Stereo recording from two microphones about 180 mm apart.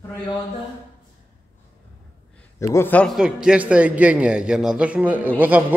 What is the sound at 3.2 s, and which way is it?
A man's voice, 5° right (ahead or behind).